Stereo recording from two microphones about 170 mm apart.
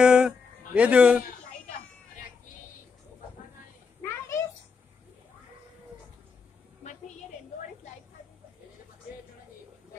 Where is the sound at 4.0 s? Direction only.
15° left (ahead or behind).